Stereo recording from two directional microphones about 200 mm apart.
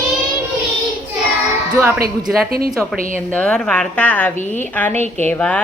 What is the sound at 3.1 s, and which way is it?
A woman's voice, 5° left (ahead or behind).